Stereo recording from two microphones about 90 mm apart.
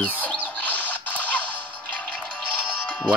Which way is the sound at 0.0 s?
15° left (ahead or behind).